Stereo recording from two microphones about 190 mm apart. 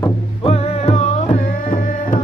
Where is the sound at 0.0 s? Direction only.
30° left (ahead or behind).